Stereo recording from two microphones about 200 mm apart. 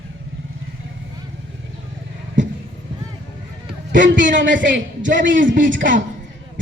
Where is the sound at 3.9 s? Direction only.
65° right (ahead or behind).